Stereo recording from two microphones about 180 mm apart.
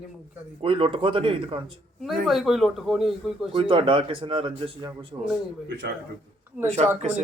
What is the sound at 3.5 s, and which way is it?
Speech, 30° right (ahead or behind).